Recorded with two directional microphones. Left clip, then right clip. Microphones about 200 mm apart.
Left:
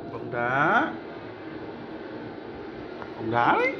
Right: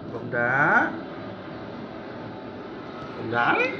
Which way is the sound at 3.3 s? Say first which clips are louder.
Even; 25° left (ahead or behind).